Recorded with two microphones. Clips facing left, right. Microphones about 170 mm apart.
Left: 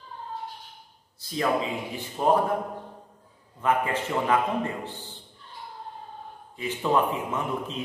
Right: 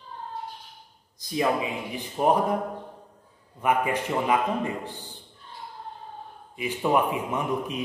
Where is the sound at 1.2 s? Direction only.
15° right (ahead or behind).